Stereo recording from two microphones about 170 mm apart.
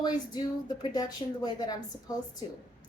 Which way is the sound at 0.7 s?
25° left (ahead or behind).